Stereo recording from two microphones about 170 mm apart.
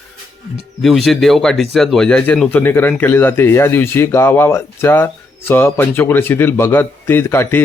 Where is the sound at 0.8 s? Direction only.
Centre (ahead or behind).